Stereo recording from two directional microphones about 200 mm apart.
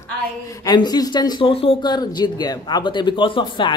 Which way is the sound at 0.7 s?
20° left (ahead or behind).